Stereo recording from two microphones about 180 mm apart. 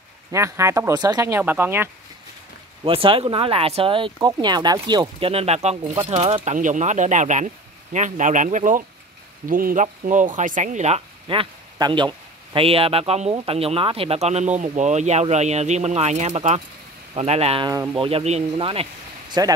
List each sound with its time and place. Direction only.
0.3 s speech: 15° right (ahead or behind)
2.8 s speech: 30° right (ahead or behind)
19.4 s speech: 20° right (ahead or behind)